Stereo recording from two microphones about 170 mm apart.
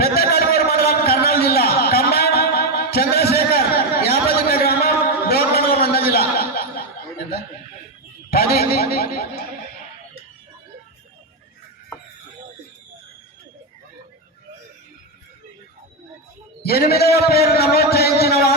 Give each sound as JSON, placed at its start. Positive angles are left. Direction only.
{"t": 0.0, "sound": "a sound", "side_deg": 65}
{"t": 8.3, "sound": "speech", "side_deg": 65}
{"t": 16.6, "sound": "a man's voice", "side_deg": 65}